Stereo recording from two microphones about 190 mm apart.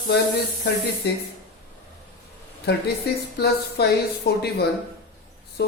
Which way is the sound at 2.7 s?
60° left (ahead or behind).